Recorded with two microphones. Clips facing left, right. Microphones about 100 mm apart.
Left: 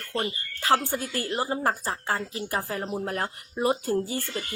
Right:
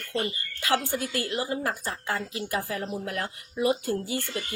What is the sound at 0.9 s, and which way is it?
Speech, 35° left (ahead or behind).